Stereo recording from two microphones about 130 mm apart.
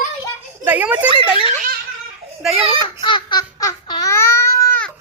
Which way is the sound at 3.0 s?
35° left (ahead or behind).